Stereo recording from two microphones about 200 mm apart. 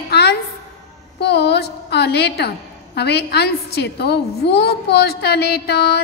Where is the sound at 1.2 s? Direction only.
60° left (ahead or behind).